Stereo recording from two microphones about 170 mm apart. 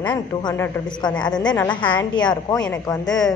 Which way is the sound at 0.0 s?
25° left (ahead or behind).